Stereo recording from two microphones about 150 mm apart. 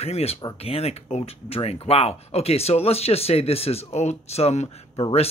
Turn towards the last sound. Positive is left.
turn(degrees=40)  # may be behind; listen again after turning